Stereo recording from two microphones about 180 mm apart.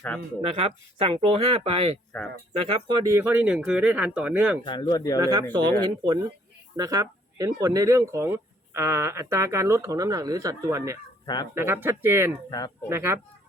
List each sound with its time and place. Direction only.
0.4 s speech: 35° right (ahead or behind)
2.8 s speech: 20° right (ahead or behind)
4.6 s speech: 25° left (ahead or behind)
5.2 s speech: 20° right (ahead or behind)
12.5 s speech: 20° left (ahead or behind)
12.9 s speech: 15° right (ahead or behind)